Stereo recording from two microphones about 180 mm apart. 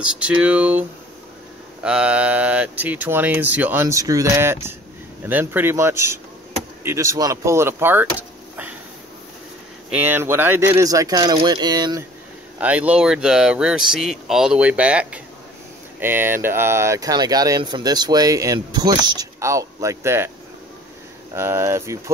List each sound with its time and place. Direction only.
0.0 s speech: 5° right (ahead or behind)
9.8 s speech: 10° right (ahead or behind)
12.5 s speech: 10° right (ahead or behind)
21.3 s speech: 15° right (ahead or behind)